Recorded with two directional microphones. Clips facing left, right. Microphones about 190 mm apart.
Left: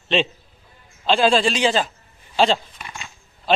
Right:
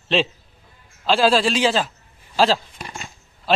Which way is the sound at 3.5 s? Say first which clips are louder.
Left 1 dB; 5° right (ahead or behind).